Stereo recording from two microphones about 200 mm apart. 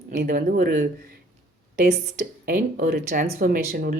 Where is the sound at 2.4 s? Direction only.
50° right (ahead or behind).